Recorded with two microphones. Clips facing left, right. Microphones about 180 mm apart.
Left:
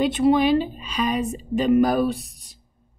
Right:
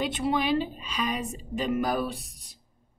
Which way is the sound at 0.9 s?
45° left (ahead or behind).